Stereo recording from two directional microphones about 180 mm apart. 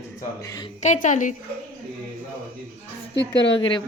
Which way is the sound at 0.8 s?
45° left (ahead or behind).